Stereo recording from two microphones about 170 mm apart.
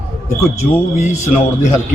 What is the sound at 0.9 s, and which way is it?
Speech, 45° left (ahead or behind).